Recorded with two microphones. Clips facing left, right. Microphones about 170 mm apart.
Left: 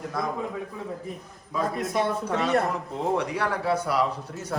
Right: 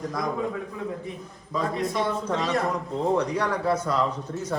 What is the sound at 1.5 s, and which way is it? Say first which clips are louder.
Speech: even; 5° left (ahead or behind).